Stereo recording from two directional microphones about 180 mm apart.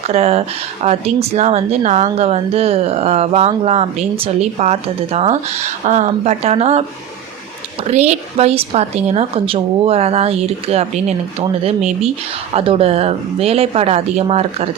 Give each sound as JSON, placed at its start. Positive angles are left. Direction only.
{"t": 0.1, "sound": "speech", "side_deg": -35}
{"t": 7.9, "sound": "speech", "side_deg": -35}